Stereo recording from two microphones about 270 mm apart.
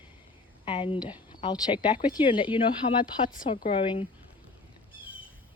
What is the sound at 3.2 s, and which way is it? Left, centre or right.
Speech, left.